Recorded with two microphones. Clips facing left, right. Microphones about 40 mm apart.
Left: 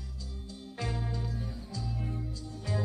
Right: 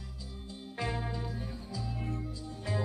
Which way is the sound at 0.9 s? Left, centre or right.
Centre.